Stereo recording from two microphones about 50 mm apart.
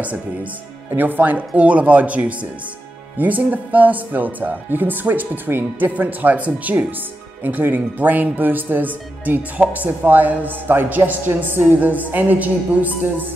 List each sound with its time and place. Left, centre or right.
0.0 s speech: right
5.9 s speech: right